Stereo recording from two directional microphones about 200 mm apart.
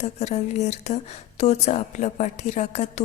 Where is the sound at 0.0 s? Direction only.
35° left (ahead or behind).